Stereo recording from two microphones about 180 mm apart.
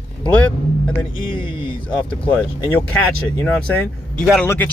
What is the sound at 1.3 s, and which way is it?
Speech, 25° left (ahead or behind).